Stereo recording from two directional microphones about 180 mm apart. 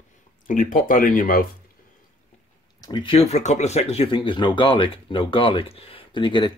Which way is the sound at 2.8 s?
25° left (ahead or behind).